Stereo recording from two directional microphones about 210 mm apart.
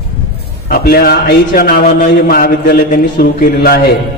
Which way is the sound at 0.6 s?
45° left (ahead or behind).